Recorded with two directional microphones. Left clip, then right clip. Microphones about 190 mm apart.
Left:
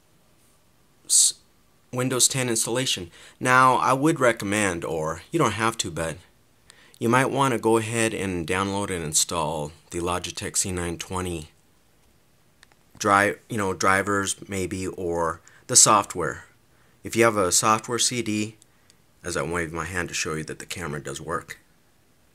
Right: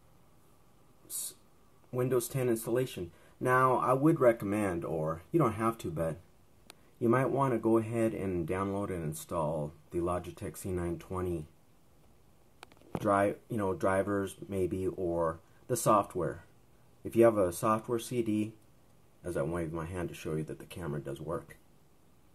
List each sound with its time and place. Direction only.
1.9 s speech: 30° left (ahead or behind)
13.1 s speech: 20° left (ahead or behind)
14.5 s speech: 15° left (ahead or behind)
14.9 s speech: 30° left (ahead or behind)
15.9 s speech: 15° left (ahead or behind)
20.2 s speech: 30° left (ahead or behind)